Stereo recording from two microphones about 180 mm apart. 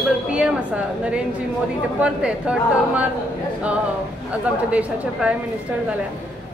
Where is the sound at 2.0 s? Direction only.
5° right (ahead or behind).